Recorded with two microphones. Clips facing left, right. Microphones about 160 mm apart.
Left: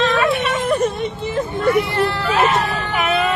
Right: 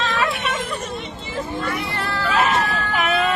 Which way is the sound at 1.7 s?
25° left (ahead or behind).